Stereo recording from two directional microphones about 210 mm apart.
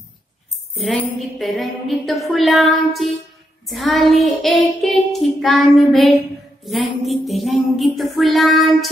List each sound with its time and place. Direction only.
0.7 s child singing: centre (ahead or behind)